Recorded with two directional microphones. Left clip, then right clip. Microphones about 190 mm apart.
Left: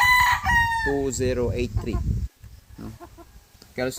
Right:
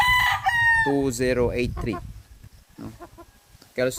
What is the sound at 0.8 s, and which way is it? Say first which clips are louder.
Speech: right 2 dB; 55° right (ahead or behind).